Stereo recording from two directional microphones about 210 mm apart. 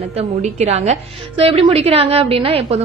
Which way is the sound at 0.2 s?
35° right (ahead or behind).